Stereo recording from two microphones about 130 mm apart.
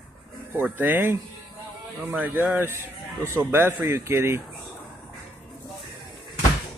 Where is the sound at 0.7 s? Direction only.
15° right (ahead or behind).